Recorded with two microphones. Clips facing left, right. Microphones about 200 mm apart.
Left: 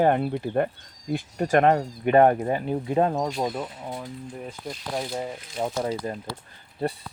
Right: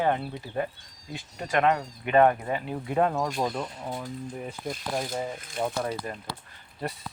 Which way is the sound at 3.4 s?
5° left (ahead or behind).